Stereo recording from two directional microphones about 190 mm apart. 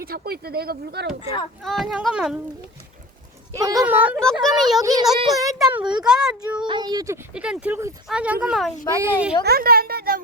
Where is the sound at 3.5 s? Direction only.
20° right (ahead or behind).